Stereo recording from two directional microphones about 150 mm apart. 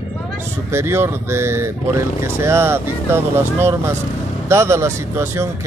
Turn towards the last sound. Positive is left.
turn(degrees=-20)  # may be behind; listen again after turning